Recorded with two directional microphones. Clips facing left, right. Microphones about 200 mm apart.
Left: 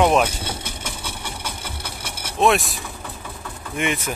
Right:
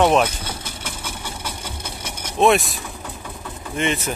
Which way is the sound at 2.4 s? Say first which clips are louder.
Right 2 dB; centre (ahead or behind).